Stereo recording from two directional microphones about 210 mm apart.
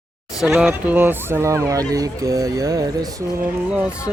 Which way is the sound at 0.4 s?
5° right (ahead or behind).